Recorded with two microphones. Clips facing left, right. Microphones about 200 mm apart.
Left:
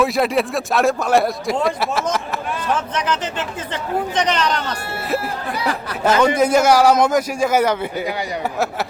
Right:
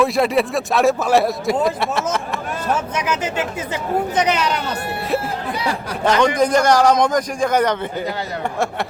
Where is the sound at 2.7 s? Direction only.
10° right (ahead or behind).